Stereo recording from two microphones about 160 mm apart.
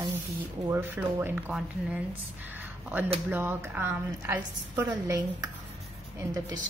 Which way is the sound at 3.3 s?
15° right (ahead or behind).